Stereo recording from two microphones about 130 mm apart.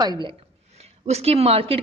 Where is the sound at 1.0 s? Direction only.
55° right (ahead or behind).